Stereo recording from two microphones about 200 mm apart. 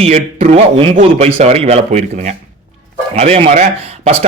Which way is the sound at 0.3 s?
35° right (ahead or behind).